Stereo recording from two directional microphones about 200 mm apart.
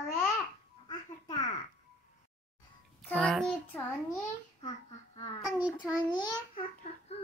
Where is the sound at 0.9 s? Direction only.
20° left (ahead or behind).